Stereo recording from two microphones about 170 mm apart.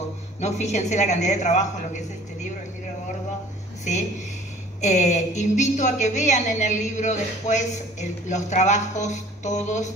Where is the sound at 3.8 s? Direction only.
45° left (ahead or behind).